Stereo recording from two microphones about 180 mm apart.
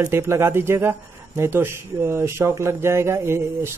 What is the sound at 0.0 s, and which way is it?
Speech, 15° right (ahead or behind).